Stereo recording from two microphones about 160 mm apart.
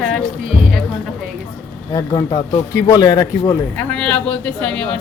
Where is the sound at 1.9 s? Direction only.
25° left (ahead or behind).